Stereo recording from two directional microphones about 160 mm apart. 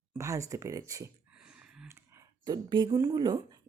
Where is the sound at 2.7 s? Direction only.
25° right (ahead or behind).